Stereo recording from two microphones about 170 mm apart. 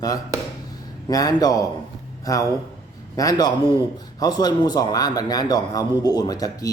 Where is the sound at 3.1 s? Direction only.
20° left (ahead or behind).